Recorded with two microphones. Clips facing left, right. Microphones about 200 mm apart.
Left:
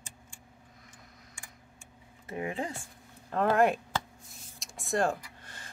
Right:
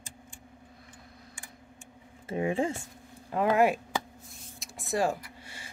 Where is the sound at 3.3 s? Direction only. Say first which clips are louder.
Right 1 dB; 10° right (ahead or behind).